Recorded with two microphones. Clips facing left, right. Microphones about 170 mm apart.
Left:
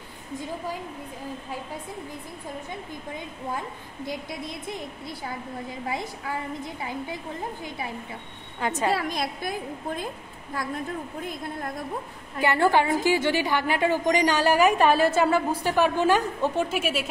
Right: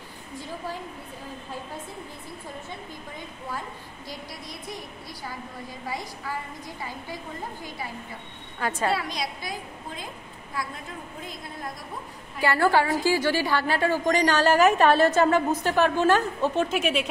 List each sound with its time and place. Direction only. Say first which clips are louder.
4.0 s a woman's voice: left 8 dB; 20° left (ahead or behind)
8.5 s a woman's voice: left 1 dB; 20° left (ahead or behind)
8.9 s a woman's voice: left 2 dB; 50° left (ahead or behind)
12.4 s a woman's voice: left 1 dB; 20° left (ahead or behind); by 17.0 s 5° left (ahead or behind)